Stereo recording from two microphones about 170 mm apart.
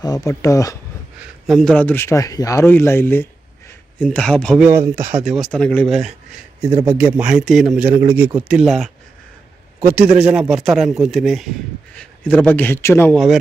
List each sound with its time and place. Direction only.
0.0 s speech: 20° left (ahead or behind)
1.5 s speech: 5° left (ahead or behind)
4.7 s a man's voice: 15° right (ahead or behind)
4.9 s speech: 45° right (ahead or behind)
5.2 s speech: centre (ahead or behind)
6.8 s a man's voice: 15° right (ahead or behind)
9.8 s a man's voice: 10° right (ahead or behind); by 13.1 s 15° left (ahead or behind)
13.1 s speech: centre (ahead or behind)